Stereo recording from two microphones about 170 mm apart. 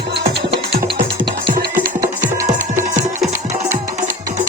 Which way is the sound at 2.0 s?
15° right (ahead or behind).